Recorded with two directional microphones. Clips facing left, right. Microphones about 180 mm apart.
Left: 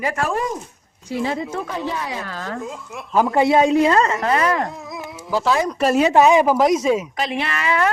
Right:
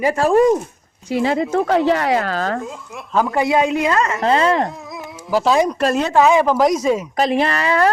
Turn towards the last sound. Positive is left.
turn(degrees=-35)  # may be behind; listen again after turning